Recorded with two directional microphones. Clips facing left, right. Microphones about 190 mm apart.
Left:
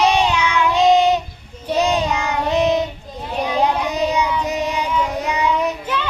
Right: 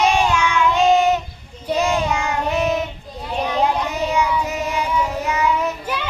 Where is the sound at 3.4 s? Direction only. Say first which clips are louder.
Left 1 dB; 10° left (ahead or behind).